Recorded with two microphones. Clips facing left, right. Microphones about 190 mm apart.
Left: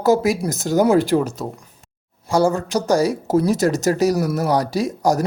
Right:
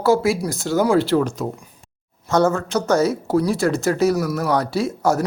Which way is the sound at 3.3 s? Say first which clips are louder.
Left 4 dB; 40° left (ahead or behind).